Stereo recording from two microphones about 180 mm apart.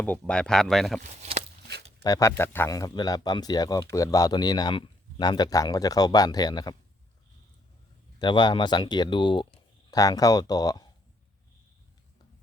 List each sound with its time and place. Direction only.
0.0 s speech: 5° left (ahead or behind)
1.1 s a sound: 40° right (ahead or behind)
2.0 s speech: 15° left (ahead or behind)
8.2 s speech: 25° left (ahead or behind)